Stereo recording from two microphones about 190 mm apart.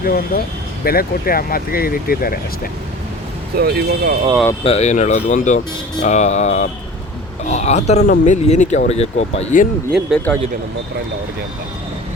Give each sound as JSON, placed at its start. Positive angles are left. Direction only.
{"t": 0.0, "sound": "speech", "side_deg": 50}
{"t": 3.6, "sound": "speech", "side_deg": -55}
{"t": 4.6, "sound": "speech", "side_deg": 35}
{"t": 10.3, "sound": "speech", "side_deg": 5}